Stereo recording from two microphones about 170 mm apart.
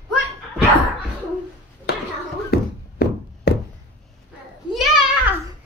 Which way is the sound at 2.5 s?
65° left (ahead or behind).